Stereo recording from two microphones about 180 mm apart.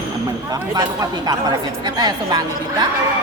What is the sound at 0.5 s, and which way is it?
Speech, 20° right (ahead or behind).